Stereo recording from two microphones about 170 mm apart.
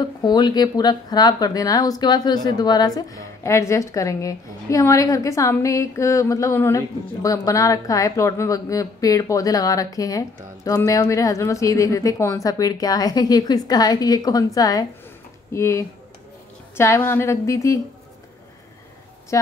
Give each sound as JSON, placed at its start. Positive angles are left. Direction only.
{"t": 0.2, "sound": "speech", "side_deg": 25}
{"t": 19.3, "sound": "speech", "side_deg": 15}